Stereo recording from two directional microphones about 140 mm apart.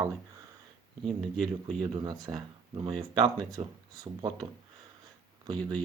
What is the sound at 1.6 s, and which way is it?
Speech, 35° right (ahead or behind).